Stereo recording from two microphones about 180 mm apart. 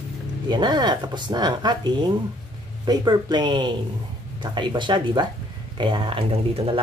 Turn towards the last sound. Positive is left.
turn(degrees=-30)  # may be behind; listen again after turning